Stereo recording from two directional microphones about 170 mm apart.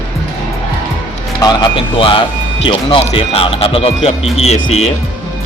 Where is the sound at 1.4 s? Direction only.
25° left (ahead or behind).